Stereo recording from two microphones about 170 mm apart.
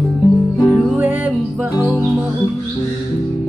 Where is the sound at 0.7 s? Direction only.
5° right (ahead or behind).